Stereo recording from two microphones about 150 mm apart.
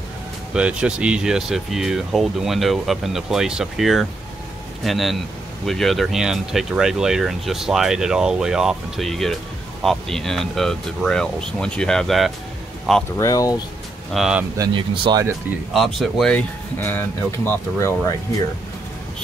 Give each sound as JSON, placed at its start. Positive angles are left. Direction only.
{"t": 0.5, "sound": "speech", "side_deg": -5}
{"t": 13.2, "sound": "speech", "side_deg": 25}
{"t": 14.1, "sound": "speech", "side_deg": -5}
{"t": 14.6, "sound": "speech", "side_deg": -30}
{"t": 15.7, "sound": "speech", "side_deg": 0}